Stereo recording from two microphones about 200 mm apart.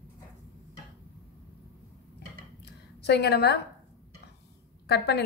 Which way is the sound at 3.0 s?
55° left (ahead or behind).